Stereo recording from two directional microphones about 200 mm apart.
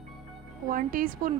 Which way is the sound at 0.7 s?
45° right (ahead or behind).